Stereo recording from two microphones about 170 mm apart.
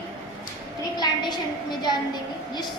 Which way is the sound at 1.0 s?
25° left (ahead or behind).